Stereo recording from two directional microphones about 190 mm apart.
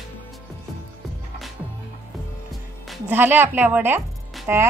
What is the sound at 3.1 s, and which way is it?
Speech, 10° right (ahead or behind).